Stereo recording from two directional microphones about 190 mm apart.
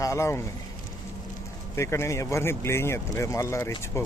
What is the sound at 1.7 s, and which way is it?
Speech, 15° left (ahead or behind).